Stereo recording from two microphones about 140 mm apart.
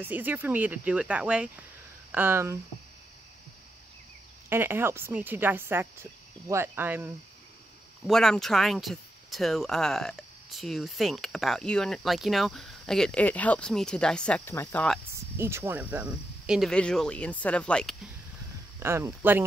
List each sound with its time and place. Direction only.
0.0 s speech: 15° right (ahead or behind)
4.5 s speech: 15° right (ahead or behind)
8.1 s speech: 5° left (ahead or behind)
15.3 s speech: 15° right (ahead or behind); by 17.9 s 5° left (ahead or behind)
18.8 s speech: 20° right (ahead or behind)